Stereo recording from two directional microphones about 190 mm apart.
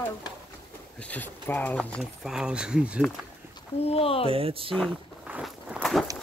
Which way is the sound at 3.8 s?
30° left (ahead or behind).